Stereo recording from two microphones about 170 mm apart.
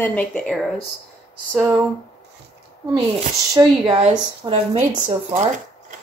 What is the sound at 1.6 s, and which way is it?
Speech, 15° right (ahead or behind).